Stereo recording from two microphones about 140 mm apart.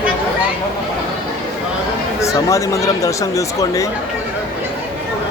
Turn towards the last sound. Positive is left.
turn(degrees=25)  # may be behind; listen again after turning